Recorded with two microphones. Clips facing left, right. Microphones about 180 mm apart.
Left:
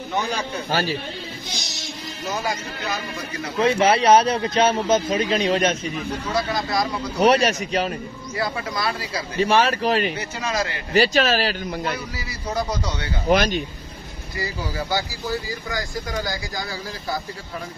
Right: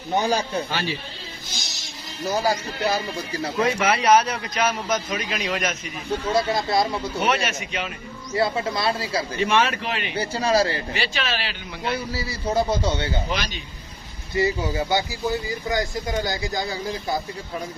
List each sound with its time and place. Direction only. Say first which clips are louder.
0.1 s speech: right 4 dB; 35° right (ahead or behind)
0.7 s speech: left 4 dB; 40° left (ahead or behind)
1.5 s music: left 5 dB; centre (ahead or behind)
2.2 s speech: right 4 dB; 35° right (ahead or behind)
3.5 s speech: left 4 dB; 25° left (ahead or behind)
6.2 s speech: right 3 dB; 25° right (ahead or behind)
7.2 s speech: left 8 dB; 35° left (ahead or behind)
8.4 s speech: right 3 dB; 25° right (ahead or behind)
9.4 s speech: left 4 dB; 35° left (ahead or behind)
10.1 s speech: right 5 dB; 30° right (ahead or behind)
10.9 s speech: left 9 dB; 40° left (ahead or behind)
12.2 s speech: right 4 dB; 25° right (ahead or behind)
13.3 s speech: left 10 dB; 50° left (ahead or behind)
14.3 s speech: right 7 dB; 25° right (ahead or behind)